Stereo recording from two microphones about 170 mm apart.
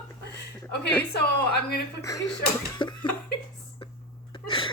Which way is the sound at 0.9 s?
10° left (ahead or behind).